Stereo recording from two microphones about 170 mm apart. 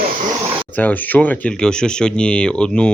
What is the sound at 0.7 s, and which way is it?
Speech, 10° left (ahead or behind).